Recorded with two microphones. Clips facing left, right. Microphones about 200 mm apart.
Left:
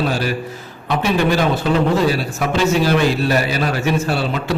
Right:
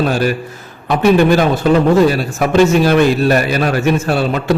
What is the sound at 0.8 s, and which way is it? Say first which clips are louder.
A man's voice: right 7 dB; 50° right (ahead or behind).